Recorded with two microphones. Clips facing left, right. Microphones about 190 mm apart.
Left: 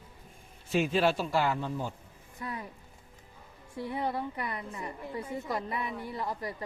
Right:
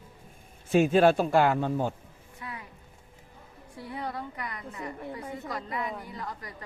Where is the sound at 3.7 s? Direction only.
25° left (ahead or behind).